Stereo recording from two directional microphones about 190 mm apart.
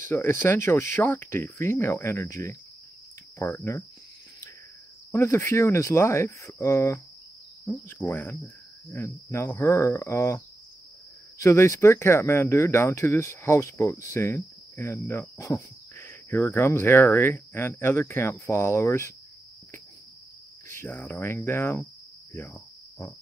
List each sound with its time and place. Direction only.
0.1 s speech: 15° left (ahead or behind)
5.1 s speech: 15° left (ahead or behind)
20.6 s speech: 10° left (ahead or behind)
22.3 s cricket: 15° left (ahead or behind)